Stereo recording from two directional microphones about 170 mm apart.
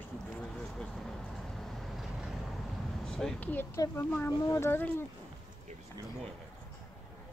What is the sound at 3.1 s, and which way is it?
Speech, 5° left (ahead or behind).